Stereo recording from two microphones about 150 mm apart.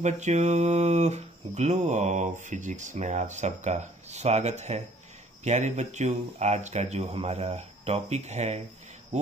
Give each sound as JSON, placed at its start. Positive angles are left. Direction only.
{"t": 0.0, "sound": "speech", "side_deg": -50}